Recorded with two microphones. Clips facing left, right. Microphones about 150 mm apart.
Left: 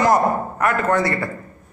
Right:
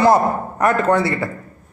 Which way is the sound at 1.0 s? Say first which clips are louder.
Right 1 dB; 20° right (ahead or behind).